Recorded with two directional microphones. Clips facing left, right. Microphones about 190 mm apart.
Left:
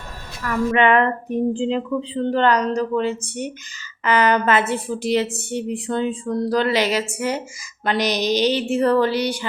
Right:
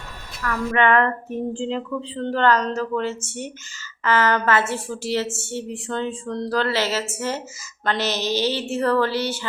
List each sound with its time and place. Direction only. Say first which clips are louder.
0.4 s a woman's voice: left 3 dB; 20° left (ahead or behind)